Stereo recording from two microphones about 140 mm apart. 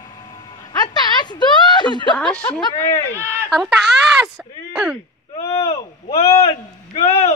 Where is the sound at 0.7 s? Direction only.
30° left (ahead or behind).